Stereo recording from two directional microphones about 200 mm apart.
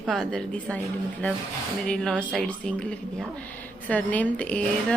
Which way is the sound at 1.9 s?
5° left (ahead or behind).